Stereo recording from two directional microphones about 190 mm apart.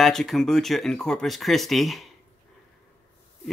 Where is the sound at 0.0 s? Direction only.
Centre (ahead or behind).